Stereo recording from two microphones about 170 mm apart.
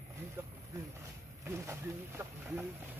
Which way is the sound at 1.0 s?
15° right (ahead or behind).